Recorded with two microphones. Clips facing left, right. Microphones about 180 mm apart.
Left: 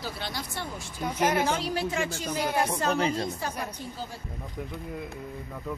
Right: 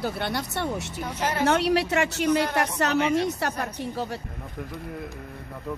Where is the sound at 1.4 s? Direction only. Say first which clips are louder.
Right 7 dB; 70° right (ahead or behind).